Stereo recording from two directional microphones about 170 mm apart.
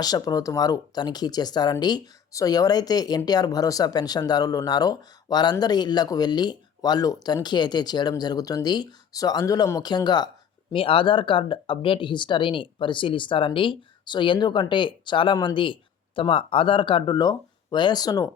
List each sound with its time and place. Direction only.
0.0 s speech: 25° left (ahead or behind)